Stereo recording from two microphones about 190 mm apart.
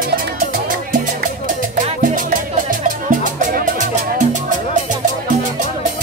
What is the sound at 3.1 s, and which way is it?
Music, 45° right (ahead or behind).